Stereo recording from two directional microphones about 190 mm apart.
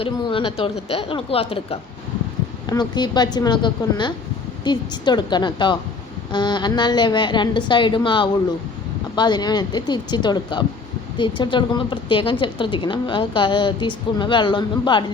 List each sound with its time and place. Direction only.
0.0 s a woman's voice: 25° left (ahead or behind)